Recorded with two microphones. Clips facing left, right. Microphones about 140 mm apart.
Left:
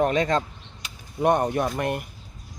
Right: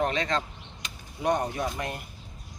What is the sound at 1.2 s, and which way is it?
Speech, 60° left (ahead or behind).